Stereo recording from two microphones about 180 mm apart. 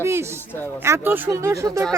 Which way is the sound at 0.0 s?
15° right (ahead or behind).